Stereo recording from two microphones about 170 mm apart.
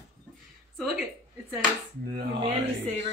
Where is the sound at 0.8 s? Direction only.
Centre (ahead or behind).